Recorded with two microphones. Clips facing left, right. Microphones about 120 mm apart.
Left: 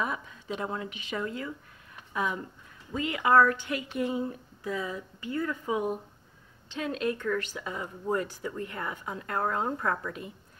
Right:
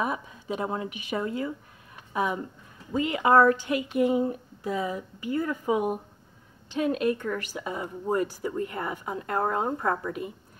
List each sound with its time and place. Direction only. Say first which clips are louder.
0.6 s a woman's voice: right 4 dB; 25° right (ahead or behind)
8.8 s a woman's voice: right 4 dB; 15° right (ahead or behind)
9.2 s speech: right 3 dB; 25° right (ahead or behind)